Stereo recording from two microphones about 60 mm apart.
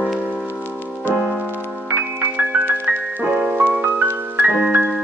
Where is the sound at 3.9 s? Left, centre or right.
Right.